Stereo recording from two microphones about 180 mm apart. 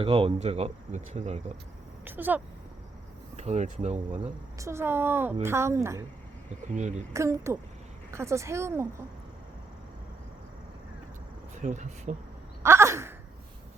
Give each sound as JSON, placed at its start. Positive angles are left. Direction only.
{"t": 0.0, "sound": "speech", "side_deg": -30}
{"t": 2.0, "sound": "speech", "side_deg": -10}
{"t": 3.3, "sound": "speech", "side_deg": -35}
{"t": 4.2, "sound": "a woman's voice", "side_deg": -15}
{"t": 7.1, "sound": "a woman's voice", "side_deg": -15}
{"t": 11.6, "sound": "speech", "side_deg": -40}
{"t": 12.6, "sound": "a sound", "side_deg": -15}